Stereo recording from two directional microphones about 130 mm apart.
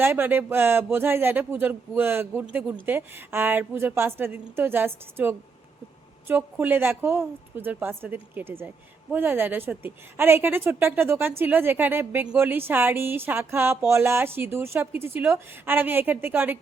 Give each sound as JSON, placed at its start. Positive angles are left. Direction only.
{"t": 0.0, "sound": "a woman's voice", "side_deg": -15}